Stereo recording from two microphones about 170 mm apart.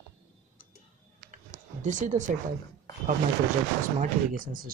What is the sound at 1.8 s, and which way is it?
Speech, 45° right (ahead or behind).